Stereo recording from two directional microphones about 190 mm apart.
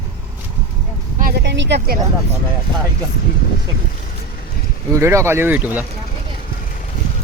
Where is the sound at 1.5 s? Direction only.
65° right (ahead or behind).